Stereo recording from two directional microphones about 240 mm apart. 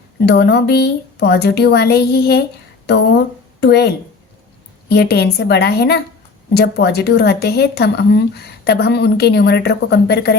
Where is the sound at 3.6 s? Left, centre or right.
Left.